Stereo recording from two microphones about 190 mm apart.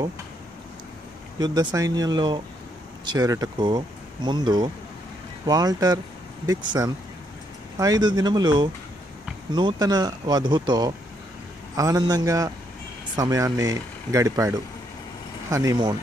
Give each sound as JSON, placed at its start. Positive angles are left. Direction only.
{"t": 1.4, "sound": "speech", "side_deg": -20}